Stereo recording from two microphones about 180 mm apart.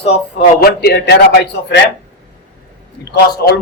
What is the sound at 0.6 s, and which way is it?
A man's voice, 65° left (ahead or behind).